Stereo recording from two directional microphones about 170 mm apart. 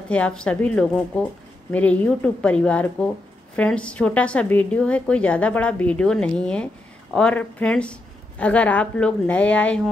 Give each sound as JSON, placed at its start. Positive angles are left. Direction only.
{"t": 0.1, "sound": "a woman's voice", "side_deg": 5}